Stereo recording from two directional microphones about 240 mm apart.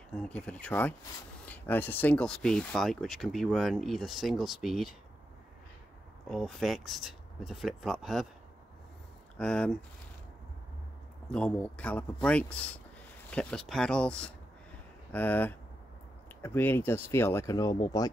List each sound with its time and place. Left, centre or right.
0.1 s speech: centre
6.2 s speech: centre
9.4 s speech: centre
11.3 s speech: centre